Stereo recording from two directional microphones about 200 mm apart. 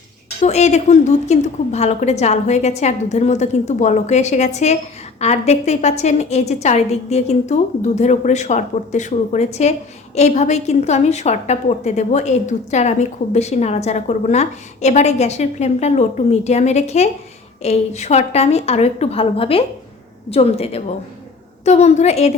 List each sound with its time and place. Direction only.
0.4 s a woman's voice: 35° left (ahead or behind)